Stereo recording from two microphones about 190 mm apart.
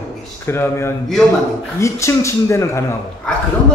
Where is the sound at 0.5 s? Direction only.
10° left (ahead or behind).